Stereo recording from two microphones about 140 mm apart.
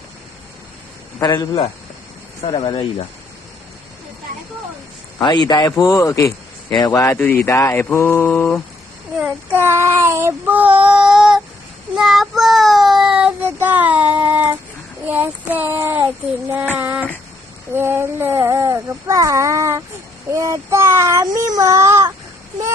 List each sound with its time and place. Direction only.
1.2 s speech: 30° left (ahead or behind)
5.7 s speech: 20° left (ahead or behind)
7.2 s mantra: 10° left (ahead or behind)
9.5 s speech: 15° right (ahead or behind)
11.9 s child singing: 5° right (ahead or behind)
13.4 s speech: 15° right (ahead or behind)